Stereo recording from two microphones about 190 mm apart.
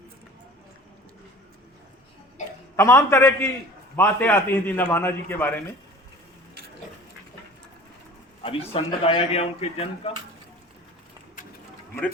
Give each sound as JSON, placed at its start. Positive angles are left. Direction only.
{"t": 2.4, "sound": "a sound", "side_deg": 40}
{"t": 2.7, "sound": "a man's voice", "side_deg": 15}
{"t": 8.4, "sound": "speech", "side_deg": 30}